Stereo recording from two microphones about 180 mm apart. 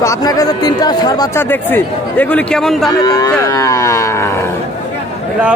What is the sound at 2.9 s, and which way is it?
Speech, 20° left (ahead or behind).